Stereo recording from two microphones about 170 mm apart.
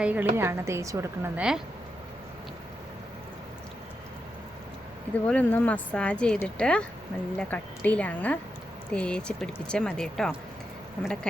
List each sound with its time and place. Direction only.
0.0 s a woman's voice: 10° right (ahead or behind)
1.4 s speech: 5° right (ahead or behind)
5.2 s speech: 10° left (ahead or behind)